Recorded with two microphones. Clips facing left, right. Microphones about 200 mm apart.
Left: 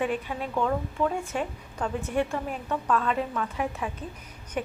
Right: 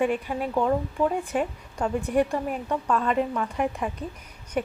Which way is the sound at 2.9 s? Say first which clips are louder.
Right 4 dB; centre (ahead or behind).